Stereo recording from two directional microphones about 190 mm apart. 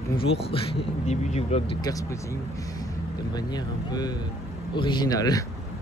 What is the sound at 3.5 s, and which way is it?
Speech, 20° left (ahead or behind).